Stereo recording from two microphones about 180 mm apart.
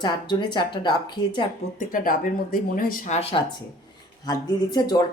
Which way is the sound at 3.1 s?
35° left (ahead or behind).